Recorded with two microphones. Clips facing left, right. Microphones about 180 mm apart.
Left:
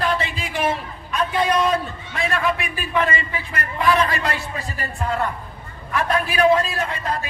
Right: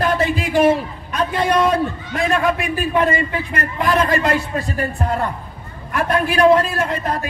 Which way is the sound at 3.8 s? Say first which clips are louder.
Right 2 dB; 45° right (ahead or behind).